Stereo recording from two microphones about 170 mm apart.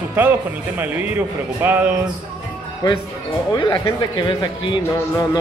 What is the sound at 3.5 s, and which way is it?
Speech, 25° left (ahead or behind).